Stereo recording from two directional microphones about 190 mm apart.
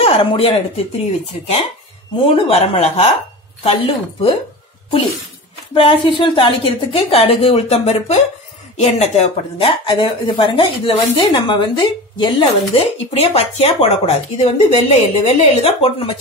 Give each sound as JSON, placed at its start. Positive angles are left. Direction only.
{"t": 0.0, "sound": "speech", "side_deg": 30}
{"t": 2.2, "sound": "a woman's voice", "side_deg": 30}
{"t": 5.8, "sound": "a woman's voice", "side_deg": 25}